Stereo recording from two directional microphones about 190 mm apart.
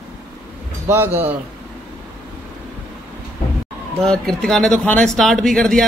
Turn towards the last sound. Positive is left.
turn(degrees=5)  # may be behind; listen again after turning